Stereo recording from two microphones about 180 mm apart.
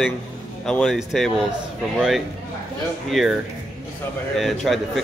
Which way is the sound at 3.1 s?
Centre (ahead or behind).